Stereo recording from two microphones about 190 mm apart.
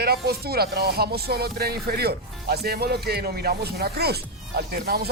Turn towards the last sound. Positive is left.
turn(degrees=-55)  # may be behind; listen again after turning